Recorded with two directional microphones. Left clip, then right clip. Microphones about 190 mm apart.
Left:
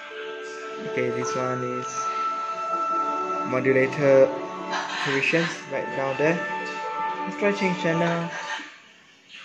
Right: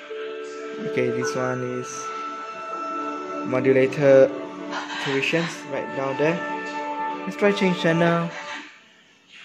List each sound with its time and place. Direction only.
0.9 s speech: 25° right (ahead or behind)
3.5 s speech: 25° right (ahead or behind)
7.3 s speech: 35° right (ahead or behind)